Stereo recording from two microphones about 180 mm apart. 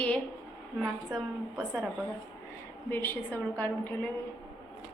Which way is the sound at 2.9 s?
10° left (ahead or behind).